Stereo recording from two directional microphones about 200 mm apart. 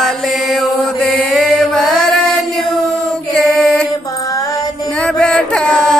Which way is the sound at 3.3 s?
Centre (ahead or behind).